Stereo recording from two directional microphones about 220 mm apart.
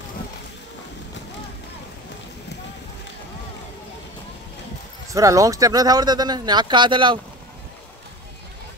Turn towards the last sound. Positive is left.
turn(degrees=-20)  # may be behind; listen again after turning